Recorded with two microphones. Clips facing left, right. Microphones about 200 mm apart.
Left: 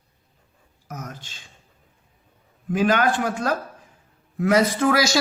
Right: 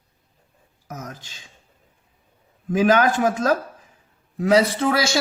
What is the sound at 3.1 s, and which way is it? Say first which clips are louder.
Speech: right 3 dB; 40° right (ahead or behind).